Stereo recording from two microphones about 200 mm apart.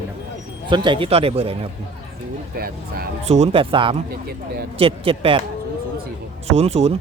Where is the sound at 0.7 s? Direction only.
25° right (ahead or behind).